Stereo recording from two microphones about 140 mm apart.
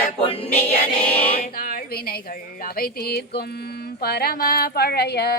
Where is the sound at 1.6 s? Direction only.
90° left.